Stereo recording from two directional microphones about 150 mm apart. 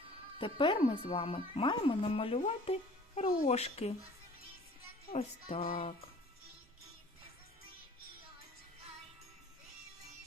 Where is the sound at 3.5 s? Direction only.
45° left (ahead or behind).